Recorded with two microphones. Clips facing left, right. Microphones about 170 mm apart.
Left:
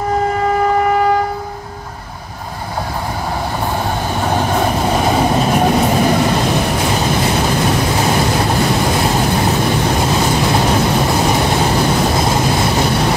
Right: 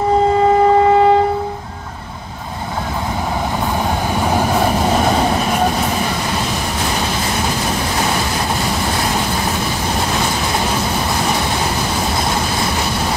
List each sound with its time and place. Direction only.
0.6 s train: 25° right (ahead or behind)